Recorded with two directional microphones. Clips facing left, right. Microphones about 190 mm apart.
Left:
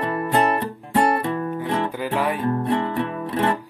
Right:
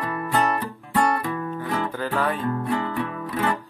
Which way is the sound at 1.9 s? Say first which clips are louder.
Left 2 dB; 15° left (ahead or behind).